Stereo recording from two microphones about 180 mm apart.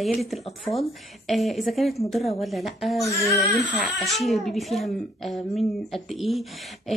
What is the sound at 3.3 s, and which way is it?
Speech, centre (ahead or behind).